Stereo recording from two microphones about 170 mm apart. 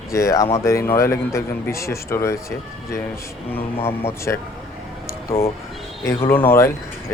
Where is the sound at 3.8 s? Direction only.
35° left (ahead or behind).